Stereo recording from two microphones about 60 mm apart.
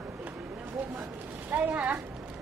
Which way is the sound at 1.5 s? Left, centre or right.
Right.